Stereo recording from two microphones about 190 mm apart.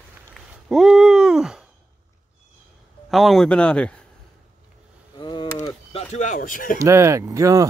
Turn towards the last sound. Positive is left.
turn(degrees=-15)  # may be behind; listen again after turning